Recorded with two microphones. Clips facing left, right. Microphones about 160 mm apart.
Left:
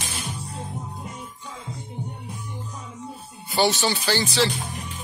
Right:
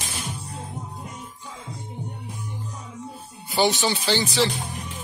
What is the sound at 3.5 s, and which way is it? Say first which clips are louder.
Speech: even; 15° right (ahead or behind).